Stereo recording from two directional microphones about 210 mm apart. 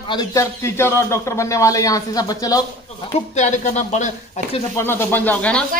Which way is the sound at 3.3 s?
35° left (ahead or behind).